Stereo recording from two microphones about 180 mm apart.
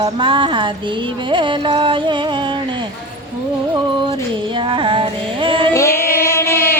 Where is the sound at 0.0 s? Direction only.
25° right (ahead or behind).